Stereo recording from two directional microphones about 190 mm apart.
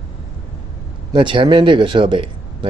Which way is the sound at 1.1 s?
25° right (ahead or behind).